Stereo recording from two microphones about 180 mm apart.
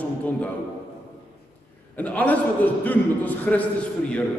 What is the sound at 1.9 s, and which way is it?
A man's voice, 10° left (ahead or behind).